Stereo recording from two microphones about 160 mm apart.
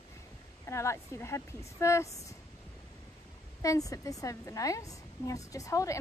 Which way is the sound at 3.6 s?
20° left (ahead or behind).